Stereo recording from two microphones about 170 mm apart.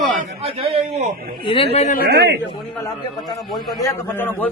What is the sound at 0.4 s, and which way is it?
Speech, 35° right (ahead or behind).